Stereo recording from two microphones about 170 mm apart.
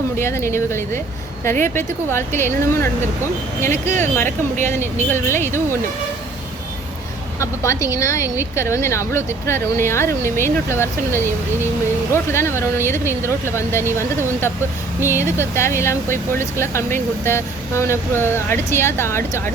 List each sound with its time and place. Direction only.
0.2 s a woman's voice: 15° left (ahead or behind)
4.3 s speech: 45° right (ahead or behind)
4.7 s a woman's voice: 15° left (ahead or behind)
7.3 s a woman's voice: 15° left (ahead or behind)
15.0 s a woman's voice: 15° left (ahead or behind)